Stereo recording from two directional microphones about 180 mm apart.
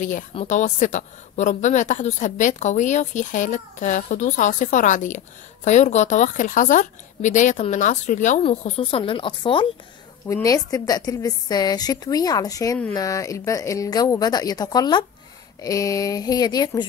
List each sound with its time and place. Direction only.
0.3 s a woman's voice: 35° left (ahead or behind)
8.5 s a woman's voice: 30° left (ahead or behind)
10.2 s a woman's voice: 15° left (ahead or behind)